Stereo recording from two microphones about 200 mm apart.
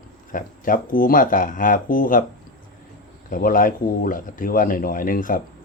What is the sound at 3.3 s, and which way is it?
Speech, 45° left (ahead or behind).